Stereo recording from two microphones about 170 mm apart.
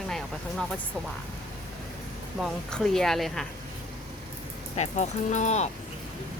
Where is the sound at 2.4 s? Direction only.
5° left (ahead or behind).